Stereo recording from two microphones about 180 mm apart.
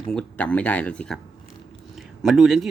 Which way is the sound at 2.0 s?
Centre (ahead or behind).